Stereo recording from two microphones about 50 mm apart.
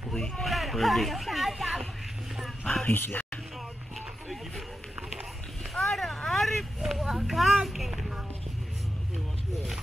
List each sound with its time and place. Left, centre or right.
0.1 s a sound: centre
2.9 s speech: left
5.8 s vehicle: centre
6.8 s speech: centre